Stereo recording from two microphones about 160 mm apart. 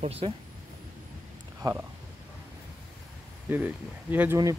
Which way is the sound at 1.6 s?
25° right (ahead or behind).